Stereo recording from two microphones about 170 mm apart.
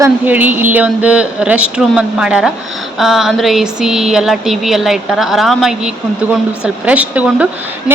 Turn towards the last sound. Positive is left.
turn(degrees=-10)  # may be behind; listen again after turning